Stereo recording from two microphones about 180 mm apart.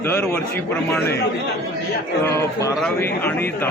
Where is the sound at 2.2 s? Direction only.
15° left (ahead or behind).